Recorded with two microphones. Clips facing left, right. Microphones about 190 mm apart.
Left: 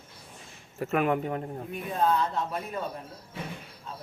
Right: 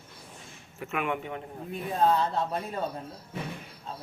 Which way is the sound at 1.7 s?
35° right (ahead or behind).